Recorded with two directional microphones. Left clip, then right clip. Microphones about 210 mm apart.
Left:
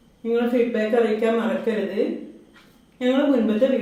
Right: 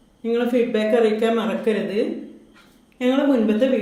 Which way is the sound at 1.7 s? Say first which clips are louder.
Right 5 dB; 35° right (ahead or behind).